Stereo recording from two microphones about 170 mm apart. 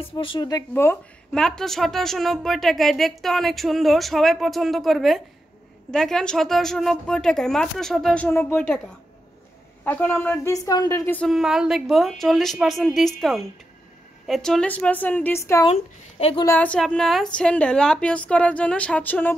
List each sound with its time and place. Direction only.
0.0 s speech: 30° left (ahead or behind)
1.3 s a woman's voice: 5° left (ahead or behind)
11.2 s a woman's voice: centre (ahead or behind); by 15.6 s 15° left (ahead or behind)
15.6 s a woman's voice: 40° left (ahead or behind)
16.5 s a woman's voice: 5° left (ahead or behind)